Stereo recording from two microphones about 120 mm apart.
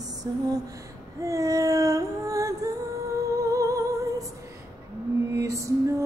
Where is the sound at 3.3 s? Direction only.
25° right (ahead or behind).